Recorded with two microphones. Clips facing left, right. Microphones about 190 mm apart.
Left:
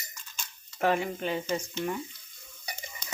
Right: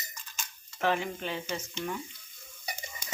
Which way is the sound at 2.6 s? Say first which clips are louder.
Right 1 dB; 15° right (ahead or behind).